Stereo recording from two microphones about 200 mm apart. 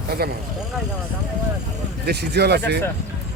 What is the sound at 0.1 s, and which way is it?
Speech, 50° right (ahead or behind).